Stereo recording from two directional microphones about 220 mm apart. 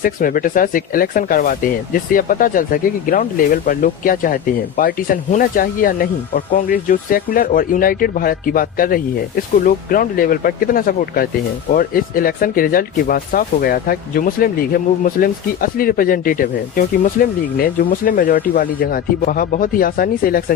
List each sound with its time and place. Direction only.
0.0 s speech: 40° left (ahead or behind)